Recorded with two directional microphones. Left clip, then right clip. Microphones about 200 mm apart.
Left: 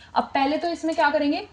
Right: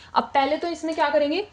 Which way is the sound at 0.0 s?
45° right (ahead or behind).